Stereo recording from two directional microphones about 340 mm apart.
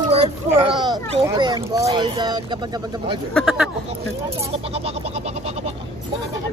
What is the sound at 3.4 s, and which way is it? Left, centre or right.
Speech, centre.